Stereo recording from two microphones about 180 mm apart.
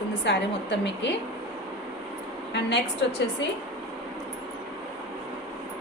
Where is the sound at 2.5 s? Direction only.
70° left (ahead or behind).